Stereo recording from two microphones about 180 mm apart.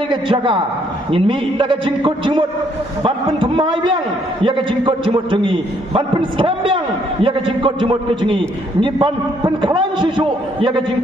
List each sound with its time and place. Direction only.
0.1 s a man's voice: 25° right (ahead or behind)